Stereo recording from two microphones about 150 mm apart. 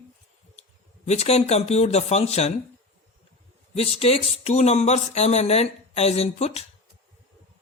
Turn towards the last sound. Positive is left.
turn(degrees=45)  # may be behind; listen again after turning